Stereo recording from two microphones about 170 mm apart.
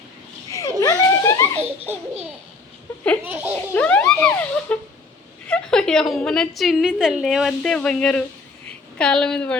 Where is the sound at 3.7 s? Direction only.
10° left (ahead or behind).